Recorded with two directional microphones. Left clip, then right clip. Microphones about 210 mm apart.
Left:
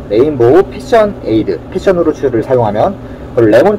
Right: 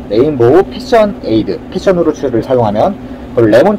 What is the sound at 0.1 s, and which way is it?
A man's voice, 5° right (ahead or behind).